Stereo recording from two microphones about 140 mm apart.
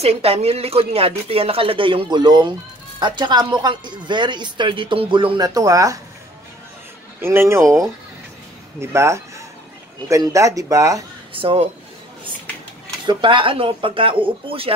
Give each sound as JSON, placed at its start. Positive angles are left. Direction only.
{"t": 0.0, "sound": "speech", "side_deg": -45}
{"t": 7.2, "sound": "speech", "side_deg": -15}
{"t": 11.3, "sound": "speech", "side_deg": -45}
{"t": 13.0, "sound": "speech", "side_deg": -35}